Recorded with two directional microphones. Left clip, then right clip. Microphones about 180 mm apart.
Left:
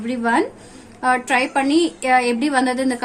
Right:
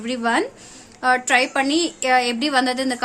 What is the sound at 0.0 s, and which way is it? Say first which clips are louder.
A woman's voice: left 2 dB; 30° right (ahead or behind).